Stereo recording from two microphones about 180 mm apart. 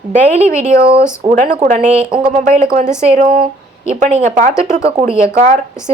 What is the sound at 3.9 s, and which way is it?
A woman's voice, 40° right (ahead or behind).